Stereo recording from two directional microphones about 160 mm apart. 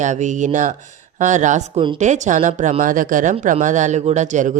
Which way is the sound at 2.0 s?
50° right (ahead or behind).